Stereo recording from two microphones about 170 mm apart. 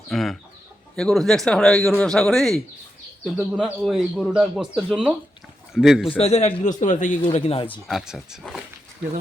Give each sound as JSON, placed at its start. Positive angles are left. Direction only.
{"t": 0.1, "sound": "a man's voice", "side_deg": 0}
{"t": 6.1, "sound": "a man's voice", "side_deg": 35}
{"t": 7.3, "sound": "a man's voice", "side_deg": 35}
{"t": 7.9, "sound": "a man's voice", "side_deg": 0}